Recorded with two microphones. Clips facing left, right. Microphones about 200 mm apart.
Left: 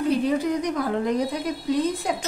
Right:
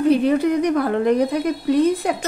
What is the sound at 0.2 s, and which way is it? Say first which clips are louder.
A woman's voice: right 6 dB; 65° right (ahead or behind).